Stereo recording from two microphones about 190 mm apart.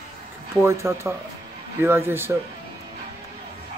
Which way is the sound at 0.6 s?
15° right (ahead or behind).